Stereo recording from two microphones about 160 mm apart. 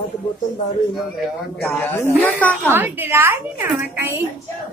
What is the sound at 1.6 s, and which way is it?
Speech, 10° left (ahead or behind).